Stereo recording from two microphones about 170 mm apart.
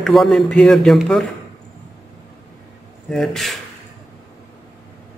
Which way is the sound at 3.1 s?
Centre (ahead or behind).